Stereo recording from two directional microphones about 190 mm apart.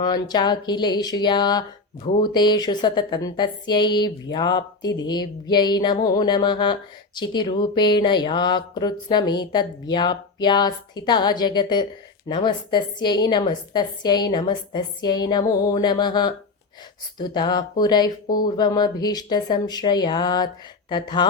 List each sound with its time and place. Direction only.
0.0 s speech: 20° left (ahead or behind)